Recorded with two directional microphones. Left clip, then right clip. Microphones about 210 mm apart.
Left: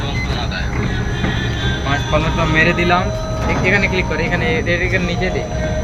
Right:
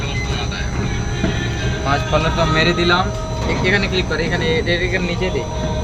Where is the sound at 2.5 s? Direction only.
10° right (ahead or behind).